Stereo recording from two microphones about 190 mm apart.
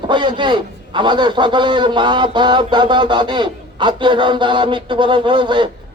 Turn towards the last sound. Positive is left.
turn(degrees=-25)  # may be behind; listen again after turning